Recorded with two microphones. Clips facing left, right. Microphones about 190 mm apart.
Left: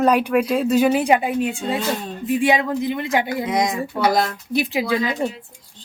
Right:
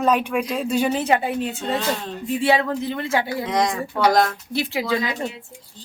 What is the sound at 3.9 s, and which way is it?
Speech, 5° left (ahead or behind).